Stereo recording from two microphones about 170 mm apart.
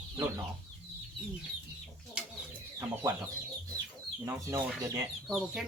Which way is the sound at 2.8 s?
15° right (ahead or behind).